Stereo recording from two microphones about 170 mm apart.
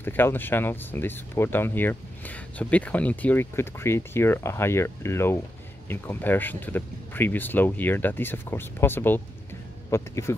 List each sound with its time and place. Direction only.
0.0 s speech: 10° left (ahead or behind)